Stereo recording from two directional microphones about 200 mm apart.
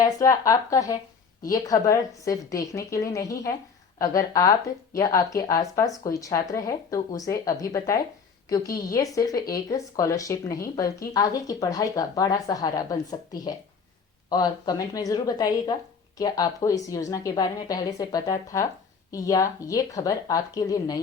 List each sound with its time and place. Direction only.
0.0 s a woman's voice: 15° left (ahead or behind)